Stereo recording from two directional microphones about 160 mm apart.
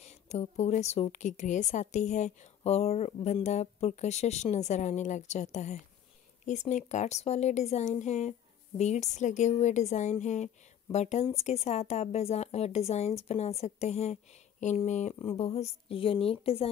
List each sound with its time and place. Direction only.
0.0 s a woman's voice: 45° left (ahead or behind)